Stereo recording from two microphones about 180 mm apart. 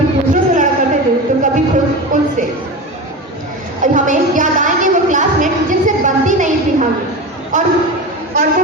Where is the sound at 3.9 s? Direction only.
45° right (ahead or behind).